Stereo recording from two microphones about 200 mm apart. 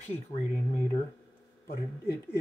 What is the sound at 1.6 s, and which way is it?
Speech, 50° left (ahead or behind).